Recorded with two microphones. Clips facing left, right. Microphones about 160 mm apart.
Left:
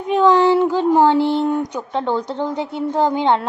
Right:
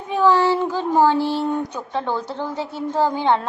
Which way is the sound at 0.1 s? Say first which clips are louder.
Left 4 dB; 20° left (ahead or behind).